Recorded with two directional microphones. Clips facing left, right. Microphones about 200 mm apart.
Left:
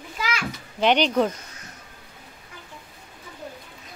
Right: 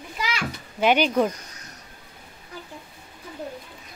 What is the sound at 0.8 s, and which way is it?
Speech, 10° right (ahead or behind).